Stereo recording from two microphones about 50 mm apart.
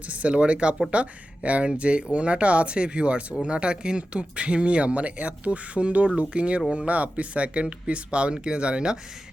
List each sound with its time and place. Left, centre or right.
0.1 s speech: right